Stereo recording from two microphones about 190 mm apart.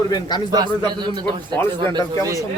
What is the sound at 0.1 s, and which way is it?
Speech, 20° left (ahead or behind).